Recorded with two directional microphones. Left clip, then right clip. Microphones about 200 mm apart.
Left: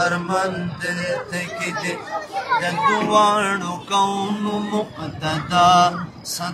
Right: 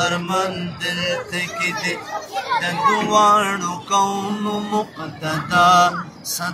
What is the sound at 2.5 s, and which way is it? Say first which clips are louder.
Speech: left 1 dB; 45° right (ahead or behind).